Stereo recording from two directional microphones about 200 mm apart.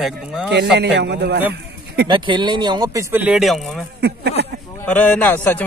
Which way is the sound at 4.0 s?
55° right (ahead or behind).